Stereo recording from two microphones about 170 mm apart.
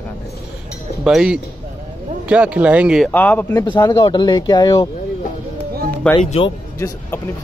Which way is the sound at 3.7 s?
25° left (ahead or behind).